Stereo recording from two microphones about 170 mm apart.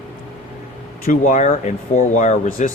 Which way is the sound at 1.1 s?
50° left (ahead or behind).